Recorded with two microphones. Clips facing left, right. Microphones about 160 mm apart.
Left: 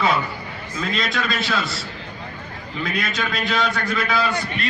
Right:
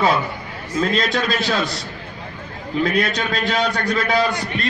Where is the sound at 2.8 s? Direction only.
40° right (ahead or behind).